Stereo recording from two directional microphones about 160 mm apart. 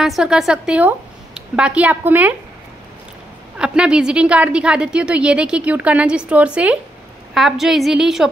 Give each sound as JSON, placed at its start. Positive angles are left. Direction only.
{"t": 0.0, "sound": "a woman's voice", "side_deg": -5}
{"t": 3.5, "sound": "a woman's voice", "side_deg": -5}